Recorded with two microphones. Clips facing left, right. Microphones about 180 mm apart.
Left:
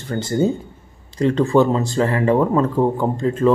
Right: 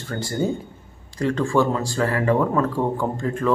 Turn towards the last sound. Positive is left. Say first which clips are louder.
# left 6 dB
turn(degrees=20)  # may be behind; listen again after turning